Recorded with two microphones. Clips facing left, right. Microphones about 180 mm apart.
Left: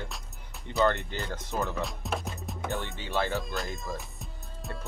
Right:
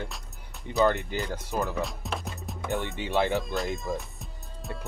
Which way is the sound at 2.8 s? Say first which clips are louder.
Right 6 dB; 15° right (ahead or behind).